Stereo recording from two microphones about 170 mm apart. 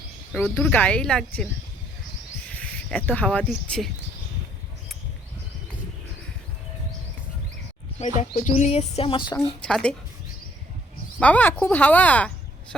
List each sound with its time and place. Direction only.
0.4 s speech: 5° left (ahead or behind)
2.5 s speech: 10° left (ahead or behind)
7.9 s a woman's voice: 45° left (ahead or behind); by 9.6 s 25° left (ahead or behind)
9.6 s a woman's voice: 5° left (ahead or behind)
11.2 s speech: 10° left (ahead or behind)